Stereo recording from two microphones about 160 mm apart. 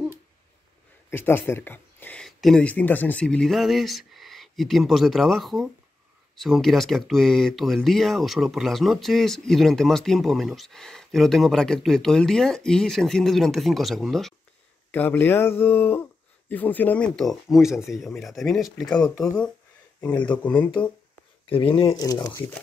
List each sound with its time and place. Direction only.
1.1 s speech: 15° left (ahead or behind)
14.9 s speech: 10° left (ahead or behind)
21.5 s speech: 35° left (ahead or behind)
22.0 s speech: 25° left (ahead or behind)